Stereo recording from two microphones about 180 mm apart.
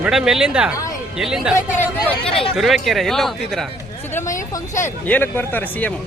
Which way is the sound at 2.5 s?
Centre (ahead or behind).